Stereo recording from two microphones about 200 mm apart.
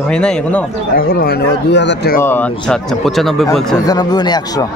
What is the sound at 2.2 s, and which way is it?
A man's voice, 10° left (ahead or behind).